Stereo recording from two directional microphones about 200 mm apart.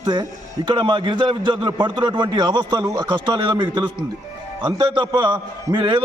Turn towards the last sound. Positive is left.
turn(degrees=-20)  # may be behind; listen again after turning